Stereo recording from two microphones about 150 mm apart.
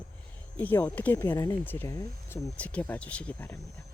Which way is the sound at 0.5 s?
10° left (ahead or behind).